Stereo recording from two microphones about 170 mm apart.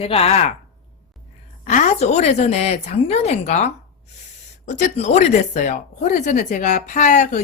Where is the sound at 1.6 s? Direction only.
45° left (ahead or behind).